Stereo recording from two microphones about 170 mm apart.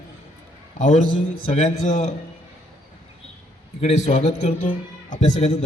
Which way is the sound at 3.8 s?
40° left (ahead or behind).